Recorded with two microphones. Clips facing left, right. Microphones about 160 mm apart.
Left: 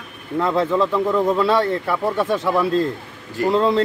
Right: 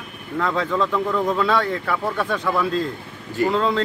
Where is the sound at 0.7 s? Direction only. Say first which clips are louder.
Left 3 dB; 10° left (ahead or behind).